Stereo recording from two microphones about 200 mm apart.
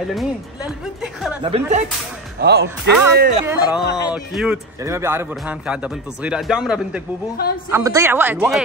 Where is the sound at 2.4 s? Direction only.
55° right (ahead or behind).